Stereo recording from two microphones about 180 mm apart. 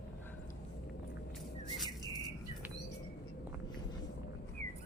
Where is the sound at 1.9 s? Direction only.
20° left (ahead or behind).